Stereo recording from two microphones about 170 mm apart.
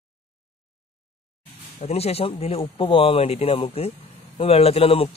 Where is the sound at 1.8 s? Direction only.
35° left (ahead or behind).